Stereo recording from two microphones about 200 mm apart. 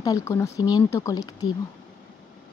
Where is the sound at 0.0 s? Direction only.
15° left (ahead or behind).